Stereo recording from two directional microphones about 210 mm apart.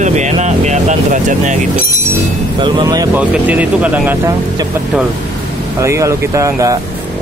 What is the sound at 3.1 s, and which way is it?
Speech, 5° right (ahead or behind).